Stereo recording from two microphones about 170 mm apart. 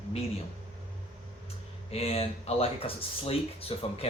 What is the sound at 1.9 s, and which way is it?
Speech, 35° left (ahead or behind).